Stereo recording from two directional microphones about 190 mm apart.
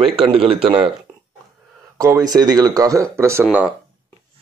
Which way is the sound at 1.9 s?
20° right (ahead or behind).